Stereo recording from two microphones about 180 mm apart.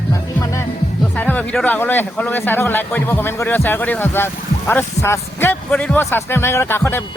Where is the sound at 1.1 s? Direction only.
10° left (ahead or behind).